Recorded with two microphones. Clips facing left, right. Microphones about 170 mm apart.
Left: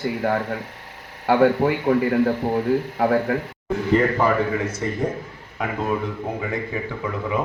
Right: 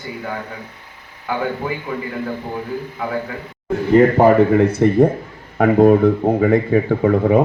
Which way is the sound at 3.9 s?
45° right (ahead or behind).